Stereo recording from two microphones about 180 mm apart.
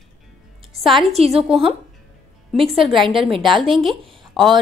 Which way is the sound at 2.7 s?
Centre (ahead or behind).